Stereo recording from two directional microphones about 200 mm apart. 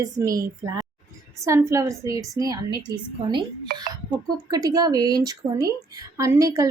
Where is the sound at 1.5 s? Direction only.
15° right (ahead or behind).